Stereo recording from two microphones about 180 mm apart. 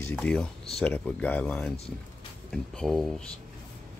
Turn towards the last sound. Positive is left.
turn(degrees=5)  # may be behind; listen again after turning